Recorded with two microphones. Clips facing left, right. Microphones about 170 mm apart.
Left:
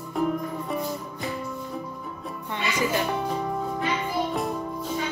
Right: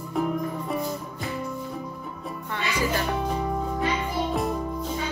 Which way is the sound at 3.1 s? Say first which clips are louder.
Even; centre (ahead or behind).